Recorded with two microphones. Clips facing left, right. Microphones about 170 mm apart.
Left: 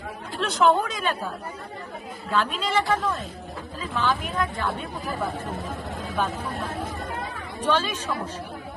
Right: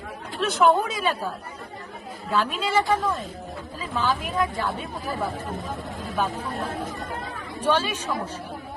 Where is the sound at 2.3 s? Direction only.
10° right (ahead or behind).